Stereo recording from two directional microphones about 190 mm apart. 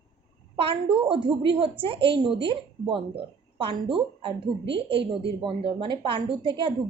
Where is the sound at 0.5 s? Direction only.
30° right (ahead or behind).